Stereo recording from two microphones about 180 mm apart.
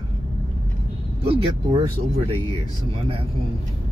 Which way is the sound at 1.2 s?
30° right (ahead or behind).